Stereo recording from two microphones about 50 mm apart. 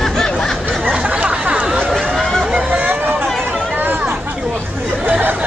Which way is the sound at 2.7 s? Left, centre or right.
Right.